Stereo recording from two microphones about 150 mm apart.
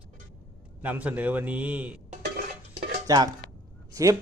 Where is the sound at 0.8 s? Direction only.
10° right (ahead or behind).